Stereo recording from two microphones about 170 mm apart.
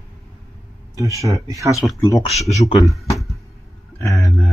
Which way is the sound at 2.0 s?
20° left (ahead or behind).